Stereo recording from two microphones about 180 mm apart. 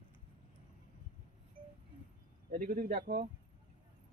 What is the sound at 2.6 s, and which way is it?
Speech, 55° right (ahead or behind).